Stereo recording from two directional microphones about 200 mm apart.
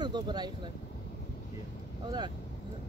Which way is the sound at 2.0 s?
20° right (ahead or behind).